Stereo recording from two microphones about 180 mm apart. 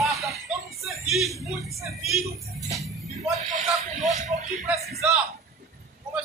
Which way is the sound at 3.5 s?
40° right (ahead or behind).